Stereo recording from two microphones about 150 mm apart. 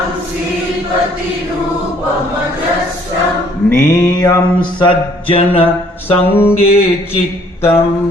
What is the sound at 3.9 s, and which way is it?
Mantra, 25° left (ahead or behind).